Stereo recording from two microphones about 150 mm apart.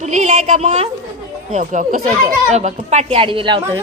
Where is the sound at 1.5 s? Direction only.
55° right (ahead or behind); by 3.8 s 35° right (ahead or behind).